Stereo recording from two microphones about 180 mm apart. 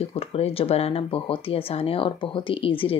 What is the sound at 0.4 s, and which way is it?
A woman's voice, 35° left (ahead or behind).